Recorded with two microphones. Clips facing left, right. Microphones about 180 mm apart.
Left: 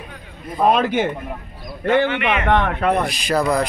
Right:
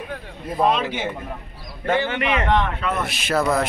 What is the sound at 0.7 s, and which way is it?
Speech, 50° left (ahead or behind).